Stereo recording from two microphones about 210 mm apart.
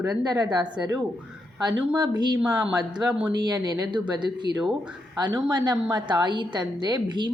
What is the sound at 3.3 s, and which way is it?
A woman's voice, 20° right (ahead or behind).